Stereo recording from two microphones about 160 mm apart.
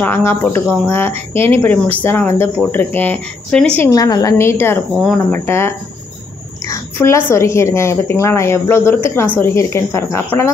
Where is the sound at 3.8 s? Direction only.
20° left (ahead or behind).